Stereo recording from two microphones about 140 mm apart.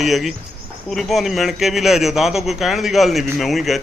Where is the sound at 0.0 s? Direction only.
Centre (ahead or behind).